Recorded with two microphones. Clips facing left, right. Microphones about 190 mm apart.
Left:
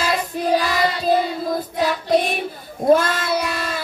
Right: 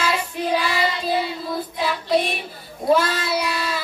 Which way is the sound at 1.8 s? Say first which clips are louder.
Left 2 dB; 45° left (ahead or behind).